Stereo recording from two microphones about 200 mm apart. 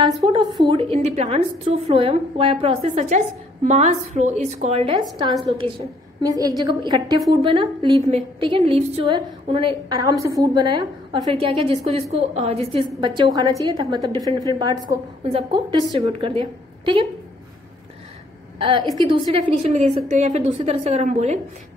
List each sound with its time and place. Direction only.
0.0 s a woman's voice: 20° right (ahead or behind)
5.6 s a woman's voice: 20° right (ahead or behind)
18.6 s a woman's voice: 25° right (ahead or behind)